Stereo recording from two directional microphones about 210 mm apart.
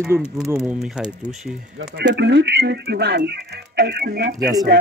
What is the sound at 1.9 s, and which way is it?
Speech, 55° right (ahead or behind).